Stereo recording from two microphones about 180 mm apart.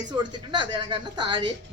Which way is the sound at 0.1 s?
25° right (ahead or behind).